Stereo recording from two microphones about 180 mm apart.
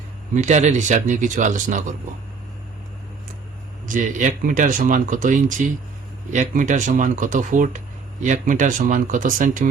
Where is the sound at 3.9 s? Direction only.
45° right (ahead or behind).